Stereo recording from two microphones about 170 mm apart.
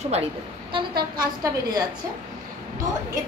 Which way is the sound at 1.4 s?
20° right (ahead or behind).